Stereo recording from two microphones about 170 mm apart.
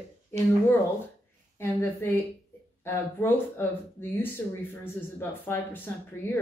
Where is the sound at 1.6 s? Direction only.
15° left (ahead or behind).